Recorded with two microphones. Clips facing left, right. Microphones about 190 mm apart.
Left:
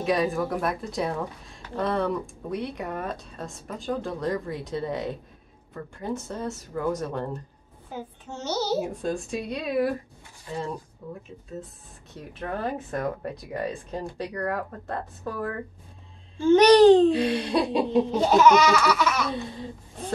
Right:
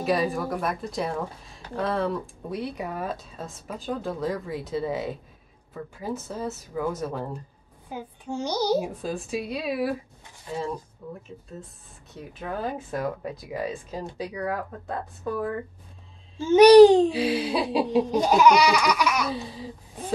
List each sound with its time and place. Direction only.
0.0 s speech: centre (ahead or behind)
11.0 s speech: centre (ahead or behind)